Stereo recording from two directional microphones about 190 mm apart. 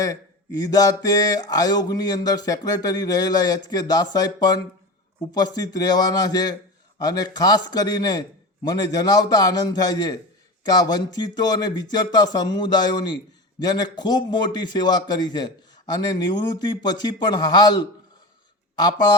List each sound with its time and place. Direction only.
0.0 s a man's voice: 20° left (ahead or behind)